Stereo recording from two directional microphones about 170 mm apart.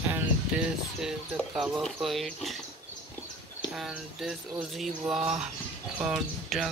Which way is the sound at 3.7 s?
Centre (ahead or behind).